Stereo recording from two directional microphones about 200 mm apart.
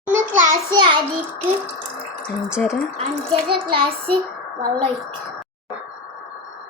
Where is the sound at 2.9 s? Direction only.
25° right (ahead or behind).